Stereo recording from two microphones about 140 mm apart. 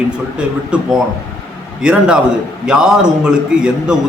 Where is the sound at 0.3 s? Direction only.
5° right (ahead or behind).